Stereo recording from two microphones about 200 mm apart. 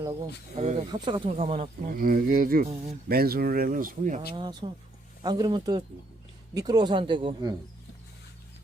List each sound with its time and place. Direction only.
0.5 s speech: 35° right (ahead or behind)
1.9 s speech: 45° right (ahead or behind)
4.4 s speech: 25° right (ahead or behind)